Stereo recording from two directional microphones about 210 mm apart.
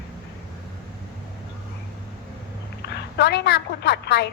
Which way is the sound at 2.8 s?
55° left (ahead or behind).